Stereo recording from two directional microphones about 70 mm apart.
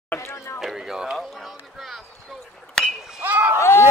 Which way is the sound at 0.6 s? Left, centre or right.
Centre.